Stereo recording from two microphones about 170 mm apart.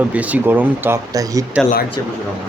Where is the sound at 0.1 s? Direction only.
10° right (ahead or behind).